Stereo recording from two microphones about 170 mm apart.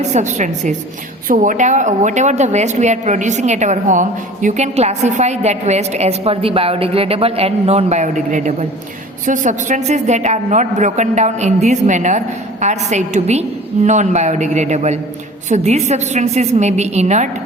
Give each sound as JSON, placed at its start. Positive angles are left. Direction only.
{"t": 0.0, "sound": "a woman's voice", "side_deg": -45}